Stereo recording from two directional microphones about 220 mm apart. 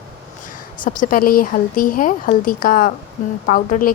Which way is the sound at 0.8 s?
40° left (ahead or behind).